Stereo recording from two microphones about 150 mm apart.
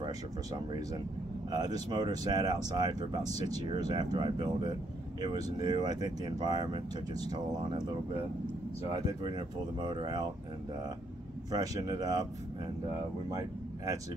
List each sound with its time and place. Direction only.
1.5 s speech: 25° right (ahead or behind)
9.8 s speech: 30° right (ahead or behind)
11.5 s speech: 25° right (ahead or behind)
13.3 s speech: 20° right (ahead or behind)